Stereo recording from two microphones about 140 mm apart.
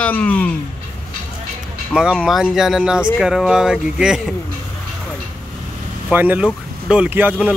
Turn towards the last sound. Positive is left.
turn(degrees=-10)  # may be behind; listen again after turning